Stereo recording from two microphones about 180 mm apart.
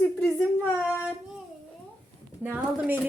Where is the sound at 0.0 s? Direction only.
5° left (ahead or behind).